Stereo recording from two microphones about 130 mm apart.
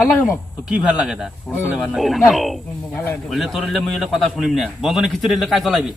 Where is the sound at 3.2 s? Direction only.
Centre (ahead or behind).